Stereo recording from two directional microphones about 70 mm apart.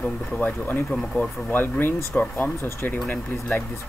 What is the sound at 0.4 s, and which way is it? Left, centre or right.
Speech, left.